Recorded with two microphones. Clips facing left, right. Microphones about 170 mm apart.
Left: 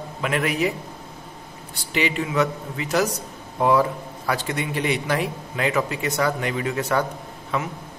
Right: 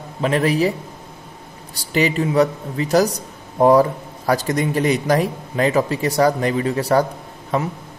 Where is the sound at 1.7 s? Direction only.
40° right (ahead or behind).